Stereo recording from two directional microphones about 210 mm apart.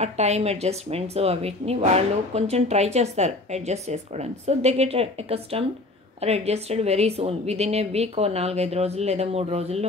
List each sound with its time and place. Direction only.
0.0 s a woman's voice: 30° right (ahead or behind)